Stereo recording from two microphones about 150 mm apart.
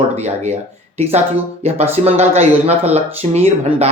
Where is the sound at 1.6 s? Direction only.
45° right (ahead or behind).